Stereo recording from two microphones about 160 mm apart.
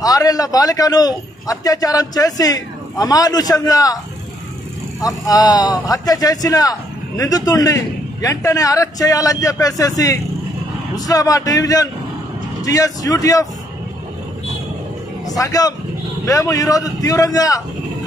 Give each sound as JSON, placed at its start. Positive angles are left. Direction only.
{"t": 0.0, "sound": "speech", "side_deg": 20}
{"t": 5.0, "sound": "speech", "side_deg": 20}
{"t": 15.2, "sound": "speech", "side_deg": 20}